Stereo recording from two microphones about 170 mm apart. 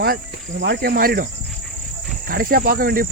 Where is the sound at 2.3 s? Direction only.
60° right (ahead or behind).